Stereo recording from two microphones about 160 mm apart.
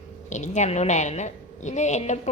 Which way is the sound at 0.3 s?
50° left (ahead or behind).